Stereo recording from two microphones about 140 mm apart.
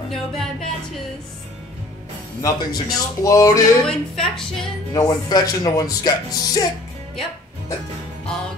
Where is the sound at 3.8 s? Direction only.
5° left (ahead or behind).